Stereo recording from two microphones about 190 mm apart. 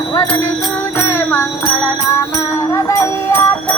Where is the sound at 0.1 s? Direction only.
15° left (ahead or behind).